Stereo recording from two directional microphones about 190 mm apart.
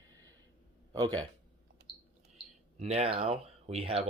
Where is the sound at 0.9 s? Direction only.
20° right (ahead or behind).